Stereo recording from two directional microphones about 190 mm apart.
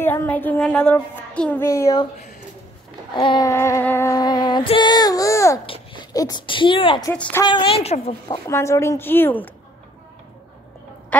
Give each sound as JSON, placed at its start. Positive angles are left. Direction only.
{"t": 0.0, "sound": "child singing", "side_deg": 10}
{"t": 3.2, "sound": "music", "side_deg": 25}
{"t": 5.7, "sound": "speech", "side_deg": 20}
{"t": 7.1, "sound": "child singing", "side_deg": 10}
{"t": 7.4, "sound": "a woman's voice", "side_deg": 25}
{"t": 8.3, "sound": "child singing", "side_deg": 15}